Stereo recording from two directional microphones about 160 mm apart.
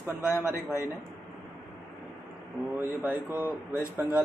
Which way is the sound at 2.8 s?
10° right (ahead or behind).